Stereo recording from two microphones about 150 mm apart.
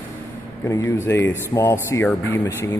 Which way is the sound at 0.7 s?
20° left (ahead or behind).